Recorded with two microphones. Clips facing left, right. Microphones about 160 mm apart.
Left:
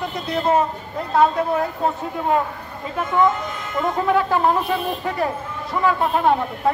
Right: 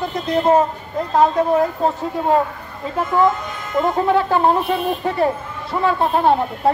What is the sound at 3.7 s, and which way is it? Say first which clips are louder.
Speech: right 3 dB; 30° right (ahead or behind).